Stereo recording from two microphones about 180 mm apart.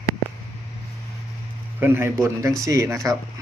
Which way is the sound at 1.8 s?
15° right (ahead or behind).